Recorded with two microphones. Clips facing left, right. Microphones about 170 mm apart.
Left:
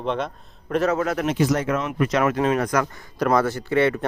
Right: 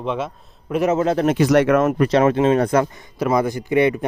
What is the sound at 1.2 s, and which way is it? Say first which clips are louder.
Speech: right 8 dB; 70° right (ahead or behind).